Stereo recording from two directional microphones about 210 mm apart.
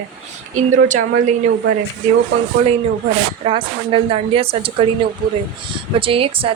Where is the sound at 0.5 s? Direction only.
35° right (ahead or behind).